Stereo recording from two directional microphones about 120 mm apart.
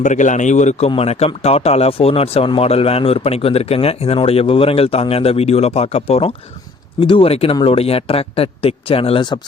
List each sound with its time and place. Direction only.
0.0 s a man's voice: 90° left
0.9 s a man's voice: 55° left (ahead or behind)